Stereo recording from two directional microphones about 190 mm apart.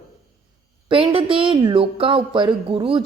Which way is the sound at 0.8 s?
30° right (ahead or behind).